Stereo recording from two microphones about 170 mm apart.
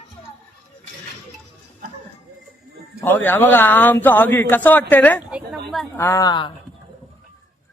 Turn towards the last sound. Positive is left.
turn(degrees=25)  # may be behind; listen again after turning